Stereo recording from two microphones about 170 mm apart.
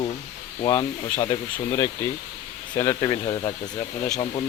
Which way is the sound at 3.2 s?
30° left (ahead or behind).